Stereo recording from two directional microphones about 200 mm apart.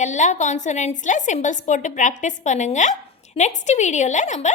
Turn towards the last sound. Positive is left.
turn(degrees=35)  # may be behind; listen again after turning